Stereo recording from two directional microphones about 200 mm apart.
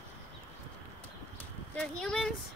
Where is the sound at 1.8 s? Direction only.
Centre (ahead or behind).